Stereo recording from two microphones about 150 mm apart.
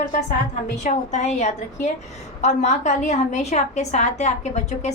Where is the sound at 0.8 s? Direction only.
50° left (ahead or behind).